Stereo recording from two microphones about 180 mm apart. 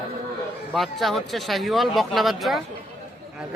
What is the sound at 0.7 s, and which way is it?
Speech, centre (ahead or behind).